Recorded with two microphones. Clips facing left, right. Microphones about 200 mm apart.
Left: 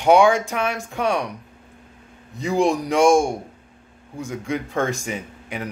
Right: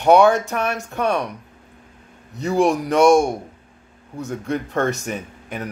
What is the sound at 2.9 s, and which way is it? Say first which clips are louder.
Speech: right 2 dB; 65° right (ahead or behind).